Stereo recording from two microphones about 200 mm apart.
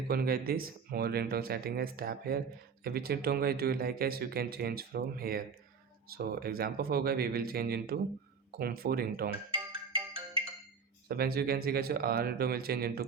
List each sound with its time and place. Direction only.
0.1 s speech: 50° right (ahead or behind)
9.5 s marimba: 25° right (ahead or behind)
11.1 s speech: 50° right (ahead or behind)